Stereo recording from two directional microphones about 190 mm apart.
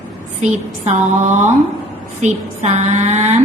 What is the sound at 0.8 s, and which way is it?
A woman's voice, 40° right (ahead or behind).